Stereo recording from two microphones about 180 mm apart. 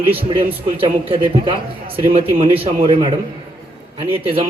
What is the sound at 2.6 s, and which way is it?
A man's voice, 30° right (ahead or behind).